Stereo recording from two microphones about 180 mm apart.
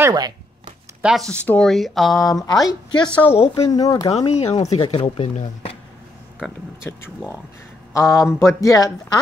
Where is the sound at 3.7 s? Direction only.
20° left (ahead or behind).